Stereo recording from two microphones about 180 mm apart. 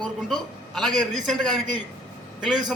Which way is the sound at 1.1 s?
Centre (ahead or behind).